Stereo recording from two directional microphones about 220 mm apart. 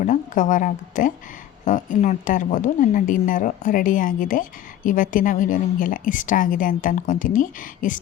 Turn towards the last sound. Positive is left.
turn(degrees=35)  # may be behind; listen again after turning